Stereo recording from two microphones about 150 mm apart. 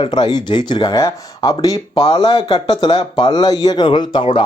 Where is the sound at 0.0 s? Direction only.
30° left (ahead or behind).